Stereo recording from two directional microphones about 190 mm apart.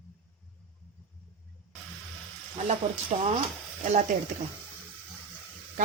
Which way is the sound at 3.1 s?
35° right (ahead or behind).